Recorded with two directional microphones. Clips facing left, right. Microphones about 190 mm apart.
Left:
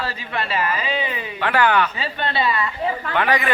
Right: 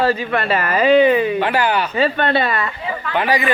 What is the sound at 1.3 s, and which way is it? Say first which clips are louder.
Speech: right 1 dB; 35° right (ahead or behind).